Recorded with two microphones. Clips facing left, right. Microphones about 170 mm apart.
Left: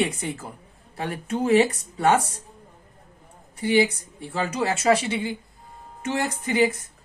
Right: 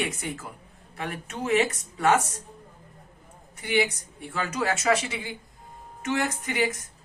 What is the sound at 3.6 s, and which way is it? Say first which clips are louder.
Speech: left 5 dB; 30° left (ahead or behind).